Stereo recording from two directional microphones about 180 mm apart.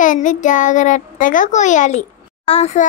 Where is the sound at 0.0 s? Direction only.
45° left (ahead or behind).